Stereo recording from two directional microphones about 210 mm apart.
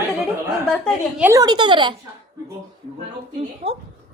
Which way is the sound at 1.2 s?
15° right (ahead or behind).